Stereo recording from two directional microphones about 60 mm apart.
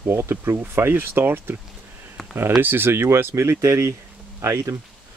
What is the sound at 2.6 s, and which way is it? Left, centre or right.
Speech, right.